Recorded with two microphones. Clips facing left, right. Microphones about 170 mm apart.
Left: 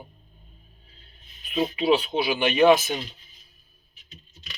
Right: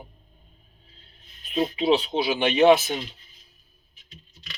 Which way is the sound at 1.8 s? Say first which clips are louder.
Even; 30° right (ahead or behind).